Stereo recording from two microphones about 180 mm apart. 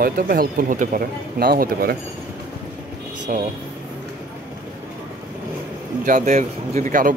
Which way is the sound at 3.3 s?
50° right (ahead or behind).